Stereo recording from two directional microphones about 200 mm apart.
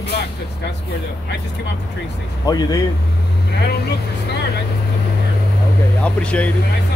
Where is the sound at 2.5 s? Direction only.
20° left (ahead or behind).